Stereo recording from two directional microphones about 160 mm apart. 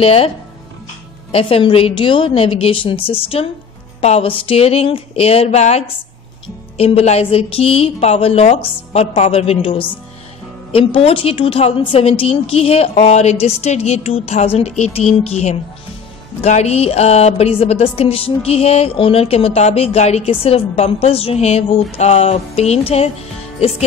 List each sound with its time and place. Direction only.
0.0 s a woman's voice: 35° left (ahead or behind)
1.3 s a woman's voice: 35° left (ahead or behind)